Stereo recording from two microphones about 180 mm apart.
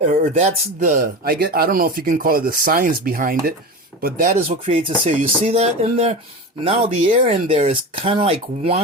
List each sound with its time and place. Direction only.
0.1 s speech: 45° right (ahead or behind)
4.4 s speech: 35° right (ahead or behind)